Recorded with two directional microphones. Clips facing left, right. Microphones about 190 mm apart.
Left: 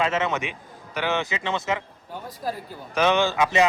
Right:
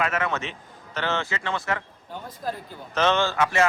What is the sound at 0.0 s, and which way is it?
A man's voice, 25° left (ahead or behind).